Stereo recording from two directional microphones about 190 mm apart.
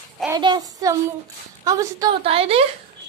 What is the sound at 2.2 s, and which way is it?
Speech, 30° right (ahead or behind).